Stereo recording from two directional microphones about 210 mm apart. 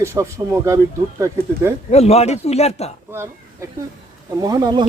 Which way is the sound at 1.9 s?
30° left (ahead or behind).